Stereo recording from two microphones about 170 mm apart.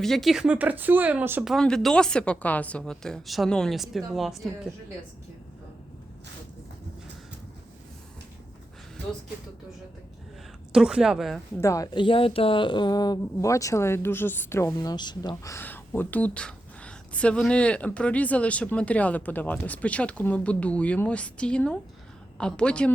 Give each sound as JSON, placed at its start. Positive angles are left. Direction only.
{"t": 0.0, "sound": "speech", "side_deg": 0}
{"t": 1.5, "sound": "a woman's voice", "side_deg": 0}
{"t": 10.7, "sound": "a woman's voice", "side_deg": -5}
{"t": 11.5, "sound": "speech", "side_deg": 15}
{"t": 14.7, "sound": "a woman's voice", "side_deg": 25}